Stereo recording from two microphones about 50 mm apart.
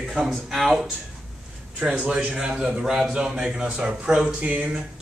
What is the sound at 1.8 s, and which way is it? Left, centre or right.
A man's voice, right.